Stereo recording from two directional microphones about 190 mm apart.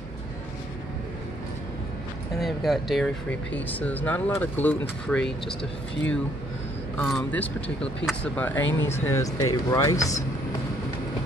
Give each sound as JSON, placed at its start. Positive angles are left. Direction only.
{"t": 2.3, "sound": "speech", "side_deg": 0}
{"t": 7.0, "sound": "speech", "side_deg": 0}